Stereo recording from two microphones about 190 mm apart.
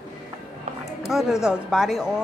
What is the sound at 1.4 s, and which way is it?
Speech, centre (ahead or behind).